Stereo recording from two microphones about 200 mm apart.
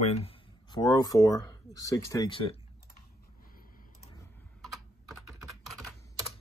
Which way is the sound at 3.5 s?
45° left (ahead or behind).